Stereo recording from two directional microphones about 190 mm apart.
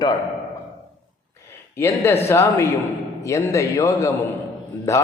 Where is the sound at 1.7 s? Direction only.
10° left (ahead or behind).